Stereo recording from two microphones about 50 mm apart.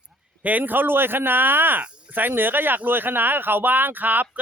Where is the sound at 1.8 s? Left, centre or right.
Right.